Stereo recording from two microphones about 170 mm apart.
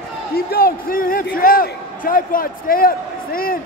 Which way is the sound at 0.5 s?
60° left (ahead or behind).